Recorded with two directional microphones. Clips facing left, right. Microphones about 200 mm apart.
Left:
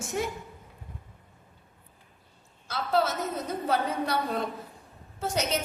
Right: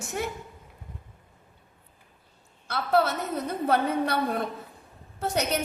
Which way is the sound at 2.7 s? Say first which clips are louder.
Right 3 dB; 60° right (ahead or behind).